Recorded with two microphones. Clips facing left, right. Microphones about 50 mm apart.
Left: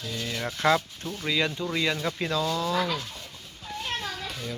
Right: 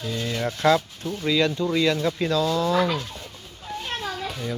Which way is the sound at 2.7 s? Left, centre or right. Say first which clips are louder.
Right 5 dB; right.